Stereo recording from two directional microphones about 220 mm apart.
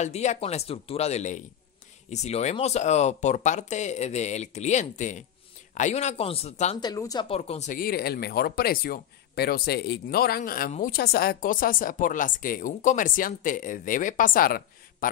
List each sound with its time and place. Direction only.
0.0 s speech: 30° left (ahead or behind)
6.8 s speech: 15° left (ahead or behind); by 15.0 s 40° left (ahead or behind)